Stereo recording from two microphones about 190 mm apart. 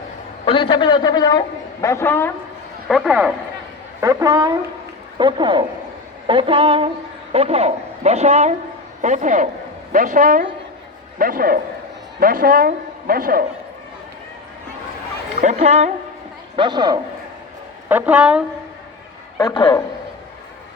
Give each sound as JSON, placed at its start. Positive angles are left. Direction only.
{"t": 0.4, "sound": "a man's voice", "side_deg": 30}
{"t": 2.9, "sound": "a man's voice", "side_deg": 0}
{"t": 4.0, "sound": "a woman's voice", "side_deg": -20}
{"t": 15.4, "sound": "a woman's voice", "side_deg": -40}
{"t": 16.6, "sound": "a woman's voice", "side_deg": -25}
{"t": 17.8, "sound": "a woman's voice", "side_deg": -10}
{"t": 19.4, "sound": "a man's voice", "side_deg": 25}